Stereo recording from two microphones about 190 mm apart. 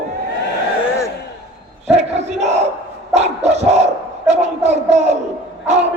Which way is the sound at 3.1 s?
35° right (ahead or behind).